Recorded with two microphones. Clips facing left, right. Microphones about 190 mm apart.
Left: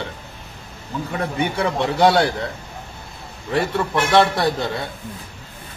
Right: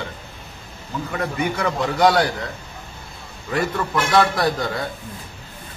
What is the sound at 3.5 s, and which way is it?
A man's voice, 25° left (ahead or behind).